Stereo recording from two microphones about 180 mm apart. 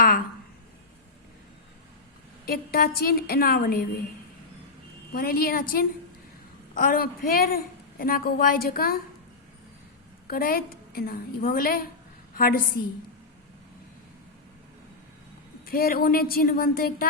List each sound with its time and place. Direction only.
2.5 s a woman's voice: 55° left (ahead or behind)
5.1 s a woman's voice: 55° left (ahead or behind)
10.2 s a woman's voice: 55° left (ahead or behind)
15.6 s a woman's voice: 55° left (ahead or behind)